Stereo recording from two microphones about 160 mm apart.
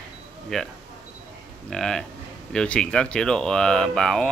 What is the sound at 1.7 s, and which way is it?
Speech, 5° left (ahead or behind).